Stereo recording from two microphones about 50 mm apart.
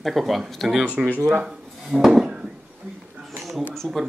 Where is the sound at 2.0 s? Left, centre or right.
Centre.